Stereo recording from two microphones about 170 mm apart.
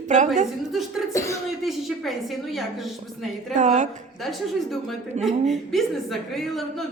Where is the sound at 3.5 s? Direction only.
45° right (ahead or behind).